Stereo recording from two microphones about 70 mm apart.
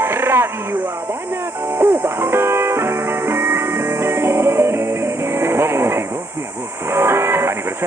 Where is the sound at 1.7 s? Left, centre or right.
Right.